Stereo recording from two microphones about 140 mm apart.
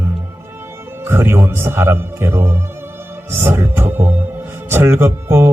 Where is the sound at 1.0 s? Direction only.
15° right (ahead or behind).